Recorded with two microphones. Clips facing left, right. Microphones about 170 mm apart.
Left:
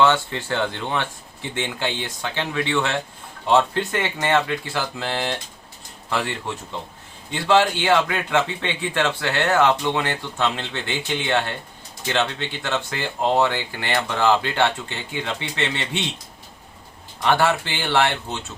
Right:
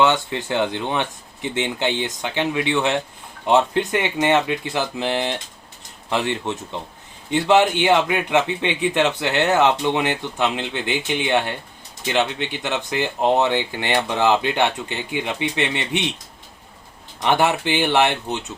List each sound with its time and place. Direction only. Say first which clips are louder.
0.0 s speech: even; 15° right (ahead or behind)
17.2 s speech: right 1 dB; 20° right (ahead or behind)